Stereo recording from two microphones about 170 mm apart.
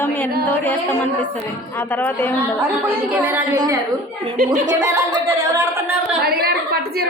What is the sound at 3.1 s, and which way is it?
Speech, 10° right (ahead or behind).